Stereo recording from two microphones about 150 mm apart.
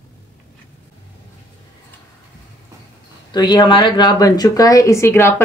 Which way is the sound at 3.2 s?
30° left (ahead or behind).